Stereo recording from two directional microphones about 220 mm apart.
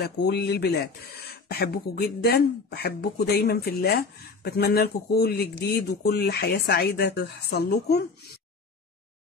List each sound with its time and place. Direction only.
0.0 s speech: 45° left (ahead or behind)